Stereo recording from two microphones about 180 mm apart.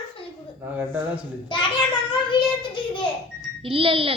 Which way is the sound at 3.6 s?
30° right (ahead or behind).